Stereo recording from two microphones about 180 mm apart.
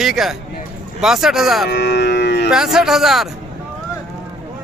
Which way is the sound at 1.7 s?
70° left (ahead or behind).